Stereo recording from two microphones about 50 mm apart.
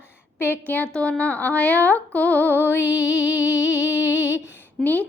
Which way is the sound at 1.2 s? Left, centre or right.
Left.